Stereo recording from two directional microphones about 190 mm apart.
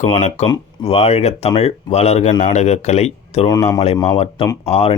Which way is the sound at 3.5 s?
20° left (ahead or behind).